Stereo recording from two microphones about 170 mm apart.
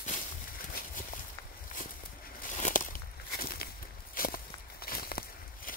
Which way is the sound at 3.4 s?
60° left (ahead or behind).